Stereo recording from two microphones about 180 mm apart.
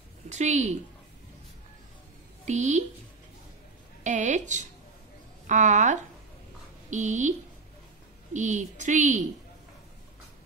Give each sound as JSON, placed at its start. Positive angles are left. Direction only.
{"t": 0.3, "sound": "a woman's voice", "side_deg": -40}
{"t": 2.4, "sound": "a woman's voice", "side_deg": -40}
{"t": 4.0, "sound": "a woman's voice", "side_deg": -40}